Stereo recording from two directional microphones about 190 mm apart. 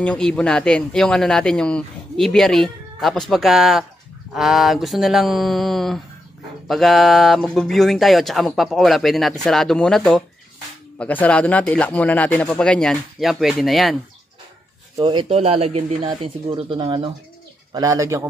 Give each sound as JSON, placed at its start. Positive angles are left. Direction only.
{"t": 0.0, "sound": "speech", "side_deg": 5}
{"t": 15.0, "sound": "speech", "side_deg": -25}